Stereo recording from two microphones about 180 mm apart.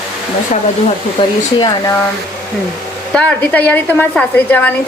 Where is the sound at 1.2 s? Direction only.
25° left (ahead or behind).